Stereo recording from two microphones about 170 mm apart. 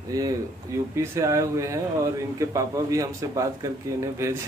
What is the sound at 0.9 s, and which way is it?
A man's voice, 15° right (ahead or behind).